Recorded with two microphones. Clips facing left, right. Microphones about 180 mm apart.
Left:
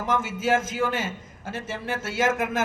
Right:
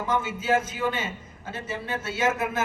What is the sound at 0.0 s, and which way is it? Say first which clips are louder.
A man's voice: left 2 dB; 90° left.